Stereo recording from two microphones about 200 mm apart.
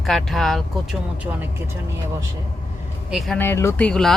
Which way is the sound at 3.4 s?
10° left (ahead or behind).